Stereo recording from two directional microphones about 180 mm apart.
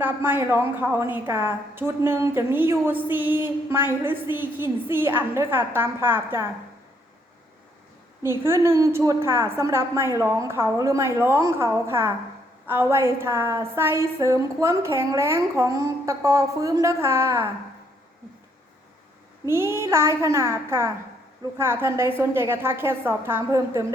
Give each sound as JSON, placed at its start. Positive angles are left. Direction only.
{"t": 0.0, "sound": "a woman's voice", "side_deg": -10}
{"t": 8.4, "sound": "a woman's voice", "side_deg": -15}
{"t": 19.5, "sound": "a woman's voice", "side_deg": -15}